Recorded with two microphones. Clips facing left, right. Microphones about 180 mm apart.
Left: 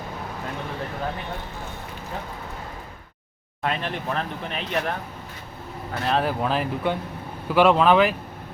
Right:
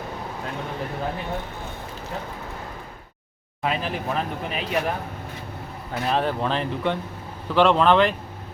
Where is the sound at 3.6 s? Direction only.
5° right (ahead or behind).